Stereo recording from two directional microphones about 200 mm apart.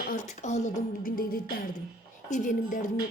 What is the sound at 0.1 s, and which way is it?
Speech, 40° left (ahead or behind).